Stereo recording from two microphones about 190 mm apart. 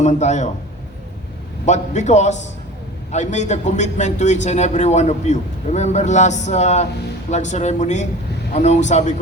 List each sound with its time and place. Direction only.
0.0 s a man's voice: 40° left (ahead or behind)
1.6 s a man's voice: 40° left (ahead or behind)